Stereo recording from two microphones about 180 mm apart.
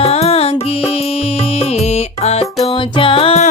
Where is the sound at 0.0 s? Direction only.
35° left (ahead or behind).